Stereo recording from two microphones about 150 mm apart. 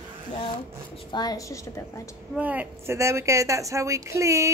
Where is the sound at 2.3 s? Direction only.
10° right (ahead or behind).